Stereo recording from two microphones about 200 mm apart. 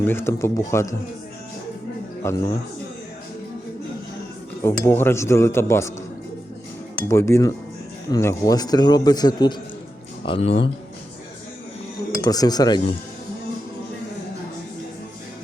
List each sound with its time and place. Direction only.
0.0 s speech: 10° left (ahead or behind)
2.2 s speech: 15° left (ahead or behind)
4.6 s speech: 10° left (ahead or behind)
7.1 s a man's voice: 10° left (ahead or behind); by 10.7 s 30° left (ahead or behind)
12.2 s a man's voice: 20° left (ahead or behind)